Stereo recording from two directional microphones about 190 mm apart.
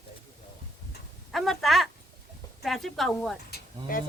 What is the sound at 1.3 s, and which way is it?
A woman's voice, centre (ahead or behind).